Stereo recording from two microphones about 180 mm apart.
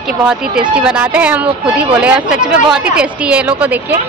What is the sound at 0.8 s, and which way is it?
A woman's voice, 5° right (ahead or behind).